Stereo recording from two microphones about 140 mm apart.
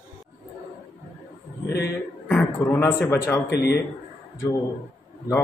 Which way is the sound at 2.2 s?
10° left (ahead or behind).